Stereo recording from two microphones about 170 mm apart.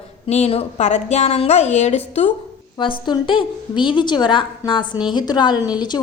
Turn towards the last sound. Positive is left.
turn(degrees=25)  # may be behind; listen again after turning